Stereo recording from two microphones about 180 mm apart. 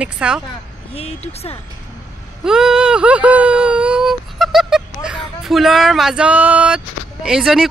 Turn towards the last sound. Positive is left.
turn(degrees=-5)  # may be behind; listen again after turning